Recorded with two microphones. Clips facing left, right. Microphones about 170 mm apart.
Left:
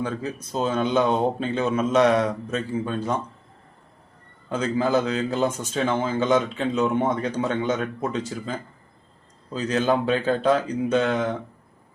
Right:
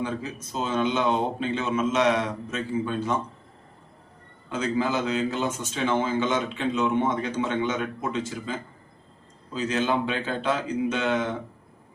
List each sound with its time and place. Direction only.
0.0 s a man's voice: 35° left (ahead or behind)
4.4 s a man's voice: 40° left (ahead or behind)